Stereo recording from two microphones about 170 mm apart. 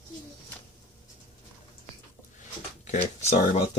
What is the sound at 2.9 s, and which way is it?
Speech, 40° left (ahead or behind).